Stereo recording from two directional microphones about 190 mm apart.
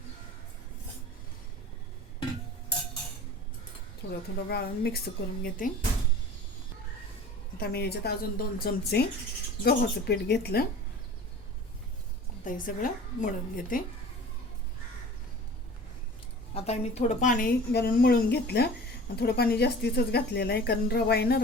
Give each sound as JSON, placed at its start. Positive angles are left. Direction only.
{"t": 4.0, "sound": "speech", "side_deg": 65}
{"t": 4.4, "sound": "a woman's voice", "side_deg": 55}
{"t": 7.6, "sound": "speech", "side_deg": 55}
{"t": 12.5, "sound": "a woman's voice", "side_deg": 45}
{"t": 16.6, "sound": "a woman's voice", "side_deg": 35}